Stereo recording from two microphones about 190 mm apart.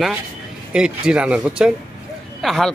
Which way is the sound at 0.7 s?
5° right (ahead or behind).